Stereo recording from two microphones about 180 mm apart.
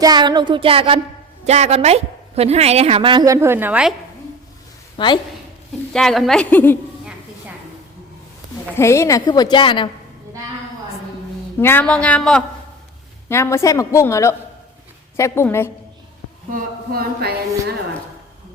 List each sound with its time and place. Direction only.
0.0 s music: 25° right (ahead or behind)
1.5 s a woman's voice: 35° right (ahead or behind); by 3.9 s 5° right (ahead or behind)
4.9 s a woman's voice: 25° left (ahead or behind)
5.9 s a woman's voice: 5° left (ahead or behind)
8.6 s a woman's voice: 15° left (ahead or behind)
11.6 s a woman's voice: 10° left (ahead or behind)
16.5 s a sound: 55° right (ahead or behind)